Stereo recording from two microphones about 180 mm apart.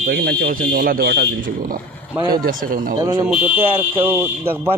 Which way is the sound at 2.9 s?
20° right (ahead or behind).